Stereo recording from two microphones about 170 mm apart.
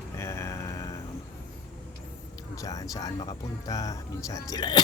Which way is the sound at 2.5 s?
20° left (ahead or behind).